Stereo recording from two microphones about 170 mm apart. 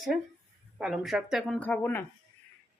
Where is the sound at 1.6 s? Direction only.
10° left (ahead or behind).